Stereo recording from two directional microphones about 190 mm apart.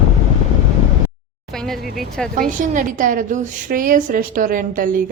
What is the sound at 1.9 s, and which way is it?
Speech, 5° left (ahead or behind).